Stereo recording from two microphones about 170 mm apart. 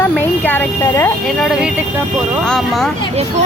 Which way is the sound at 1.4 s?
5° right (ahead or behind).